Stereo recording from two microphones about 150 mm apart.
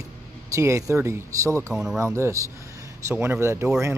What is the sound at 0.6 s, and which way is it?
Speech, 20° right (ahead or behind).